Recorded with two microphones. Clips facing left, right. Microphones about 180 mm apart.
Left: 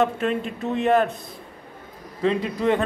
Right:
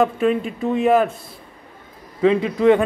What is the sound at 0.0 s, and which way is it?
Speech, 5° right (ahead or behind).